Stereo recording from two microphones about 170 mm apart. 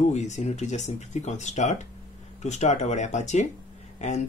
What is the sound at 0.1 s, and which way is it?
Speech, 45° left (ahead or behind).